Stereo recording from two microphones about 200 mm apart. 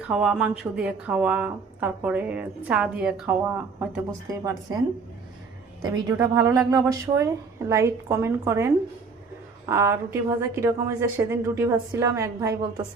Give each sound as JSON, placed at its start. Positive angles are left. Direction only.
{"t": 0.1, "sound": "speech", "side_deg": -5}
{"t": 5.9, "sound": "speech", "side_deg": -15}